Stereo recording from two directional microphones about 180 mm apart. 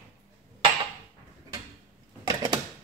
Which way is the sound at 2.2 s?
20° right (ahead or behind).